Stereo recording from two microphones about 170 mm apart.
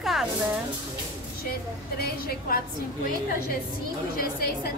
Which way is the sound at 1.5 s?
65° left (ahead or behind).